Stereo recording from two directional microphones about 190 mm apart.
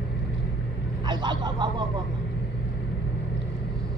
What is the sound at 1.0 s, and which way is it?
Speech, 25° right (ahead or behind).